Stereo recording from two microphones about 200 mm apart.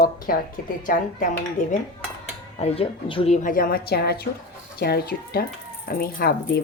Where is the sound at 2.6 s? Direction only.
30° left (ahead or behind); by 6.6 s 50° left (ahead or behind).